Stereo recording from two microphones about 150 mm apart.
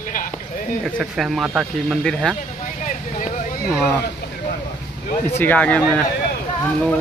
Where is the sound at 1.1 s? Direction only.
Centre (ahead or behind).